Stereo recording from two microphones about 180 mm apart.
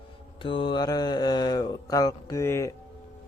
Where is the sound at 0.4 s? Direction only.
30° left (ahead or behind).